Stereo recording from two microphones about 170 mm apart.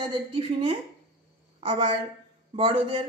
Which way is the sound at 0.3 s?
35° right (ahead or behind).